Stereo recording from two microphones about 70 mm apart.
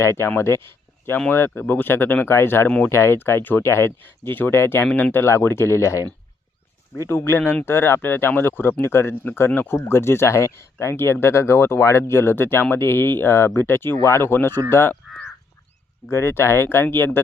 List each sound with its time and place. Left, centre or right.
0.0 s speech: left
2.6 s speech: left
2.9 s speech: left
16.0 s speech: left